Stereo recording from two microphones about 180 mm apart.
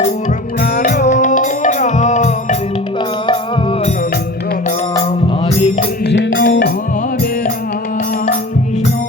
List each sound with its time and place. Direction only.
0.9 s music: 45° left (ahead or behind)
3.2 s music: 30° left (ahead or behind)
5.5 s music: 40° left (ahead or behind)
6.1 s music: 90° left
6.5 s music: 65° left (ahead or behind)